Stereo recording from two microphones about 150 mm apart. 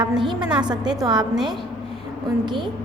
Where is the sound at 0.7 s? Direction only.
25° right (ahead or behind).